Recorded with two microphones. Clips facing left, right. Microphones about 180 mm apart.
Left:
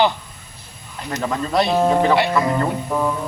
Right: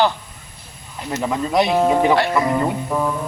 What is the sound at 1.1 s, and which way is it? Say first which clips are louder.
Speech: right 1 dB; 10° right (ahead or behind).